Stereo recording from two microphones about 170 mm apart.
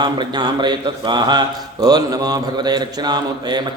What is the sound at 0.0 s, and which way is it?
A man's voice, 25° right (ahead or behind).